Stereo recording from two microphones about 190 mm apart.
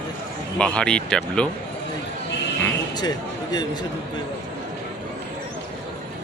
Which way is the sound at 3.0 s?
20° left (ahead or behind).